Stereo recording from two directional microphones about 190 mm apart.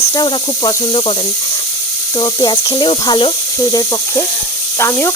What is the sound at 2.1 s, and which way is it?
Speech, 25° left (ahead or behind).